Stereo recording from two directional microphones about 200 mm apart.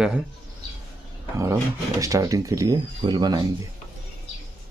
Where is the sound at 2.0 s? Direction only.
15° right (ahead or behind).